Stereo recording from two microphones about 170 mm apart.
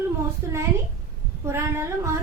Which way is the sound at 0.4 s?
15° right (ahead or behind).